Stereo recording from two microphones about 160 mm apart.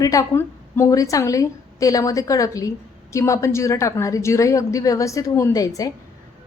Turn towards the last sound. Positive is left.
turn(degrees=20)  # may be behind; listen again after turning